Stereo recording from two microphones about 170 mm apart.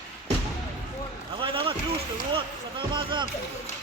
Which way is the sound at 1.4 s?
30° right (ahead or behind).